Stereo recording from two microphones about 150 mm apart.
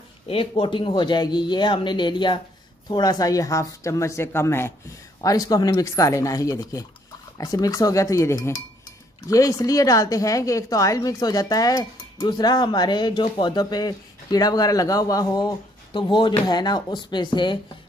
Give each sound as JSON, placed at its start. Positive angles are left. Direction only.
{"t": 0.3, "sound": "a woman's voice", "side_deg": 35}